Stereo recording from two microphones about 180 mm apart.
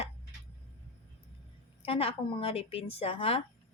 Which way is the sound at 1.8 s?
30° left (ahead or behind).